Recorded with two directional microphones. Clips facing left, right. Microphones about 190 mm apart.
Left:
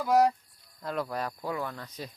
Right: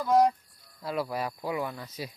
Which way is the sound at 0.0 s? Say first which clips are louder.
Right 1 dB; 5° left (ahead or behind).